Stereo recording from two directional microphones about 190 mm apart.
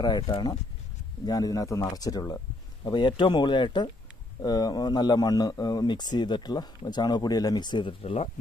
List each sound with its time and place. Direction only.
0.0 s speech: 20° left (ahead or behind)